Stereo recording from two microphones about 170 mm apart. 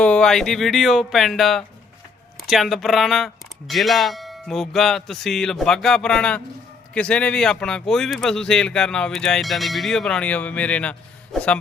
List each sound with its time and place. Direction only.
0.0 s speech: 5° left (ahead or behind)